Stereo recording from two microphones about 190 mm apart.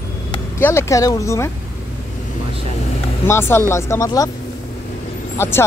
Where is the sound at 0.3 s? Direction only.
10° left (ahead or behind).